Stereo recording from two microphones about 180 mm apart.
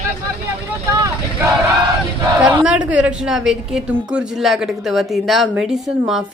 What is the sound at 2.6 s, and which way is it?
A woman's voice, 5° right (ahead or behind).